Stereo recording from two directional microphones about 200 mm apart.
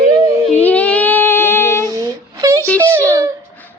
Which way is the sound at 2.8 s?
10° right (ahead or behind).